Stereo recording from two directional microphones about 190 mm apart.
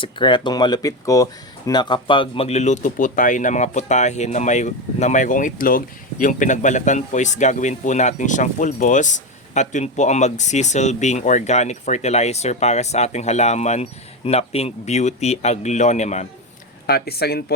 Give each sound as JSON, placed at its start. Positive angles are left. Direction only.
{"t": 0.0, "sound": "speech", "side_deg": 25}
{"t": 16.8, "sound": "speech", "side_deg": 55}